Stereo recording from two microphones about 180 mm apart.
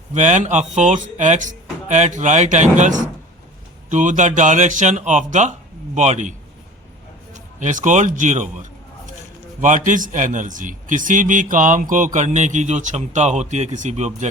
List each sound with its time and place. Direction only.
0.1 s a man's voice: 40° right (ahead or behind)
7.3 s a man's voice: 45° right (ahead or behind)
9.6 s a man's voice: 45° right (ahead or behind)